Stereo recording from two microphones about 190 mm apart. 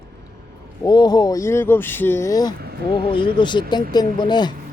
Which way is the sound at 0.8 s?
20° left (ahead or behind).